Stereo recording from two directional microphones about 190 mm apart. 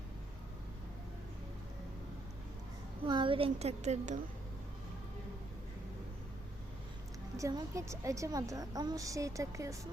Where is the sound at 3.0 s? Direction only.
25° right (ahead or behind).